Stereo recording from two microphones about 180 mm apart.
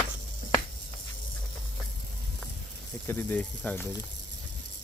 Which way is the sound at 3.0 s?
10° left (ahead or behind).